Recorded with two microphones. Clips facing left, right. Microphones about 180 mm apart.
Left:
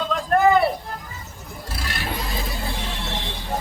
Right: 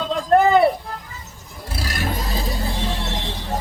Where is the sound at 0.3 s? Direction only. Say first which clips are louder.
Right 2 dB; 25° right (ahead or behind).